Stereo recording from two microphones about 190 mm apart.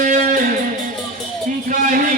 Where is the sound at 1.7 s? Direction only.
45° right (ahead or behind).